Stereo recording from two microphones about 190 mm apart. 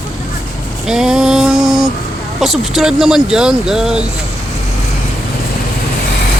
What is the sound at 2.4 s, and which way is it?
Speech, centre (ahead or behind).